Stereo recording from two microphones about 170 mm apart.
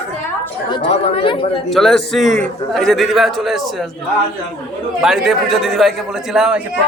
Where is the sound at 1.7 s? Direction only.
Centre (ahead or behind).